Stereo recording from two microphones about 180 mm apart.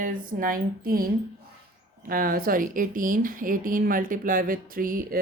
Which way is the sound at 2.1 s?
50° right (ahead or behind).